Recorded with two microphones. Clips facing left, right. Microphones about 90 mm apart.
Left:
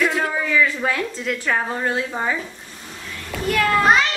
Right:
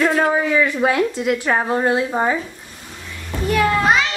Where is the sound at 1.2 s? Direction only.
15° right (ahead or behind).